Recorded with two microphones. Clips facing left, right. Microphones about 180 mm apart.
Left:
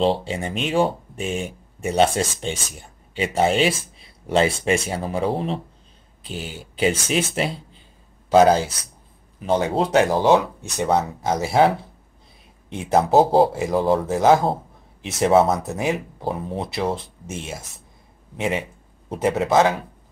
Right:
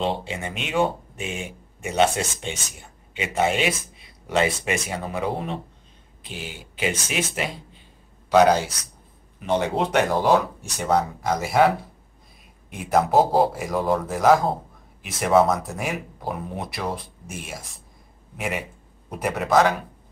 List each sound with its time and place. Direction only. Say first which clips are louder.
0.0 s speech: left 5 dB; 35° left (ahead or behind)
8.5 s speech: left 2 dB; 30° left (ahead or behind)